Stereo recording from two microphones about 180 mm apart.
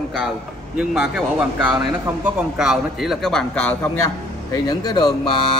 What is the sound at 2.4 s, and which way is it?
Speech, 5° right (ahead or behind).